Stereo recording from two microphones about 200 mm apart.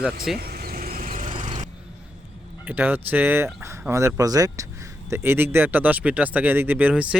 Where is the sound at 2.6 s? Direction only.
10° right (ahead or behind).